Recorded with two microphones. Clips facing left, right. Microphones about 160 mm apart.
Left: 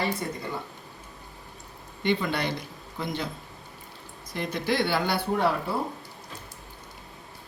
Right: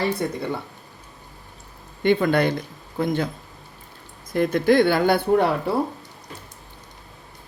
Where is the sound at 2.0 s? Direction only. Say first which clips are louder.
Right 8 dB; 50° right (ahead or behind).